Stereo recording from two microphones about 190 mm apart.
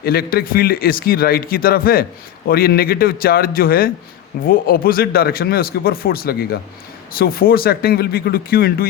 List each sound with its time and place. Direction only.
0.0 s speech: 55° left (ahead or behind)